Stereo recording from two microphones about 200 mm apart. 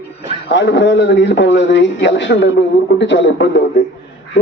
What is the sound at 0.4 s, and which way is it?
A man's voice, 60° left (ahead or behind).